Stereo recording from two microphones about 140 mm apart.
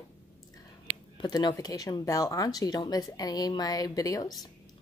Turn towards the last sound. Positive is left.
turn(degrees=30)  # may be behind; listen again after turning